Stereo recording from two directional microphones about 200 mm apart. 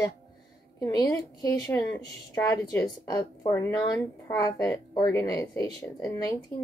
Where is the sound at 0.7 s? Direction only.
20° left (ahead or behind).